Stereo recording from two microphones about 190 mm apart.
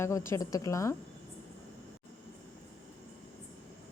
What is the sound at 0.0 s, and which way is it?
Speech, 15° left (ahead or behind).